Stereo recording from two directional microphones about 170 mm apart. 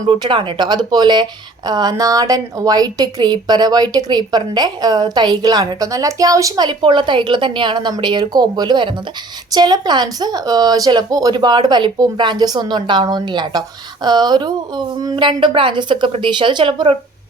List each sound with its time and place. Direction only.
0.1 s speech: 25° right (ahead or behind)